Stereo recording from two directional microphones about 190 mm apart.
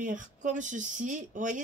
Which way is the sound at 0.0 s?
45° right (ahead or behind).